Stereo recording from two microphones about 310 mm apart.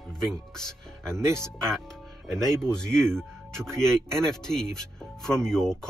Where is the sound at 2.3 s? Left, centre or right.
Centre.